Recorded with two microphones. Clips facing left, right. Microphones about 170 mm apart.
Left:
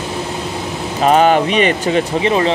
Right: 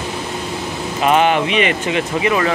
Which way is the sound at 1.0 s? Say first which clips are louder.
Left 3 dB; 40° left (ahead or behind).